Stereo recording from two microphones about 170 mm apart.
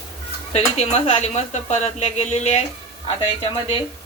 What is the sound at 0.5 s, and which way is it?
Speech, 40° left (ahead or behind).